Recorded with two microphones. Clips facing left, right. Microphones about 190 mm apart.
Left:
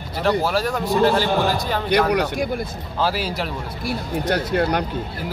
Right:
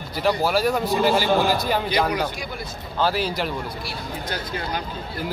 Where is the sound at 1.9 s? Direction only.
65° left (ahead or behind).